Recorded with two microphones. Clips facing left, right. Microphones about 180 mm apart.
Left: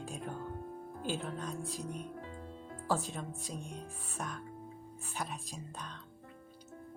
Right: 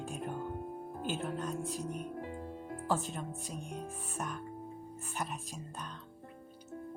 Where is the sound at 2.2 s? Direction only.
15° right (ahead or behind).